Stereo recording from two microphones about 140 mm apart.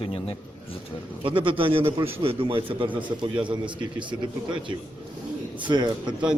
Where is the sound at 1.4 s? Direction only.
40° right (ahead or behind).